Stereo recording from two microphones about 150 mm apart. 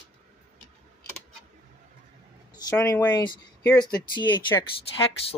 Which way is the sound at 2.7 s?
15° left (ahead or behind).